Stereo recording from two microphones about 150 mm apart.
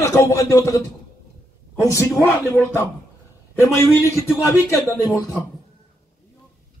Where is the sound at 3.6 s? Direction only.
20° left (ahead or behind).